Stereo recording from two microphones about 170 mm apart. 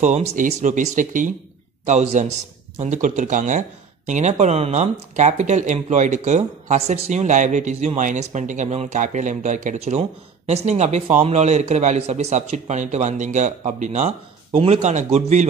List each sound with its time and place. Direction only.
0.0 s speech: 45° right (ahead or behind)